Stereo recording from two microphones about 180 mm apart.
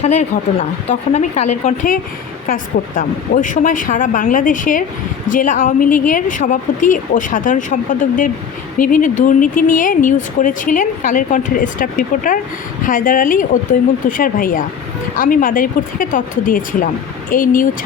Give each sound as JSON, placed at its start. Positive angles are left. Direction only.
{"t": 0.0, "sound": "a woman's voice", "side_deg": 40}